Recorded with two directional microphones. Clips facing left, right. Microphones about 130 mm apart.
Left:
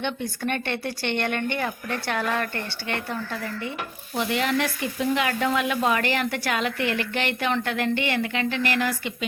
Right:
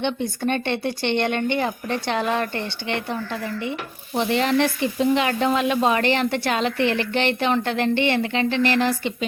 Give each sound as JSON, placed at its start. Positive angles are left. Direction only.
{"t": 0.0, "sound": "stir", "side_deg": -25}